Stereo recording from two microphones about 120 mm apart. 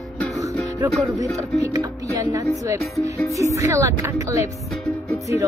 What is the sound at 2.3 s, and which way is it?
Speech, 25° right (ahead or behind).